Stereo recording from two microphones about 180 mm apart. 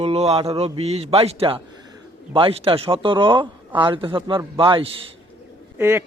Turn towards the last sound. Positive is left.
turn(degrees=-15)  # may be behind; listen again after turning